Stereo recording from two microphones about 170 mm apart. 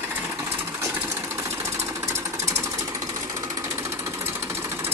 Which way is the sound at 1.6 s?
15° right (ahead or behind).